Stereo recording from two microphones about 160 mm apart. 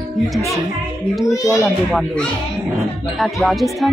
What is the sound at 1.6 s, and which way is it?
Speech, centre (ahead or behind).